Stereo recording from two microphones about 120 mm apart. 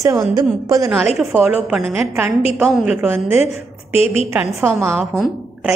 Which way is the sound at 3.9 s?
55° left (ahead or behind).